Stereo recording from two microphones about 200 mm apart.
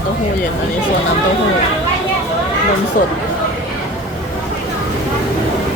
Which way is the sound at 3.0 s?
45° left (ahead or behind).